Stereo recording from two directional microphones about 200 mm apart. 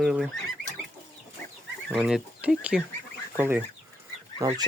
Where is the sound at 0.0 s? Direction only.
5° right (ahead or behind).